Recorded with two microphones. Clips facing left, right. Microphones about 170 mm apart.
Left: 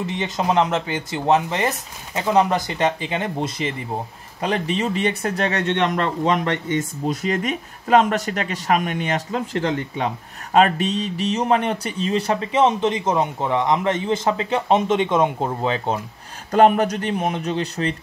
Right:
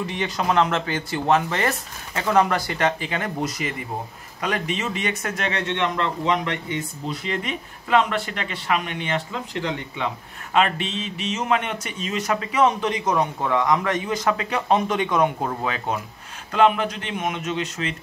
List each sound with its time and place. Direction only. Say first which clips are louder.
0.0 s speech: left 2 dB; 20° left (ahead or behind)
16.5 s speech: left 4 dB; 45° left (ahead or behind)